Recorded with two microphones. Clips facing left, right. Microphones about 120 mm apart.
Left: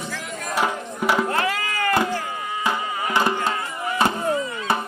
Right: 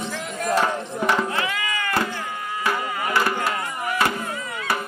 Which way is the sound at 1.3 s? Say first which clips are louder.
Left 3 dB; 40° left (ahead or behind).